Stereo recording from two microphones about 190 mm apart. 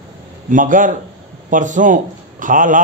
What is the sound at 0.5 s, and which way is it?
A man's voice, 45° right (ahead or behind).